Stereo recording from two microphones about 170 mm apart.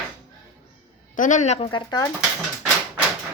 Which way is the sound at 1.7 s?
25° left (ahead or behind).